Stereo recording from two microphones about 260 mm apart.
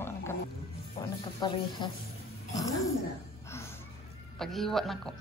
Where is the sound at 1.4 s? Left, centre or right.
Centre.